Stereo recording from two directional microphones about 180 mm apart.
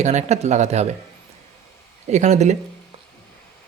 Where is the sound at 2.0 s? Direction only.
40° right (ahead or behind).